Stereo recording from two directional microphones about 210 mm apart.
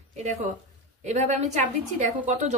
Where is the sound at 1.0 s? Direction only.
35° right (ahead or behind).